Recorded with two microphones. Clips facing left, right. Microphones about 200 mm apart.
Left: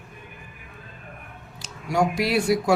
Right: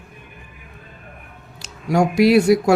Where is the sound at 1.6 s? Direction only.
70° right (ahead or behind).